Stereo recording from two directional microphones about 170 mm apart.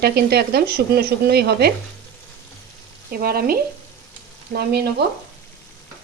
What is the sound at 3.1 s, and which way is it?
Speech, 60° right (ahead or behind).